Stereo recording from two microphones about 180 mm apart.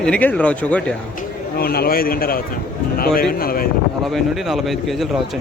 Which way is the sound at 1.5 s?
60° left (ahead or behind).